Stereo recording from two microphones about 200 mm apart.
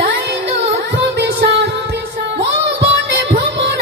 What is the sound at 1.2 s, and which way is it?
Music, 55° right (ahead or behind).